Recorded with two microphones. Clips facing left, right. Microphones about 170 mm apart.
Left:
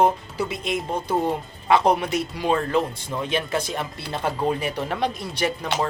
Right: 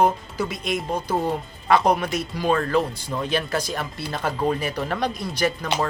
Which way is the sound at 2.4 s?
20° left (ahead or behind).